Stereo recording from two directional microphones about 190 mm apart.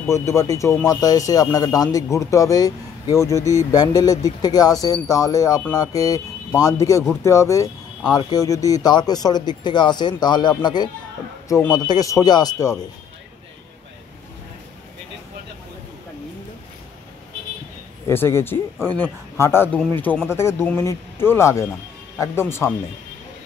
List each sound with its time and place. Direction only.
0.1 s speech: 15° left (ahead or behind)
18.0 s speech: 10° left (ahead or behind)